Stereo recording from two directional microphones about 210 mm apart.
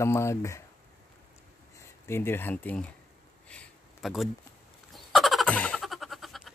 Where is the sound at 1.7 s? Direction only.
10° left (ahead or behind).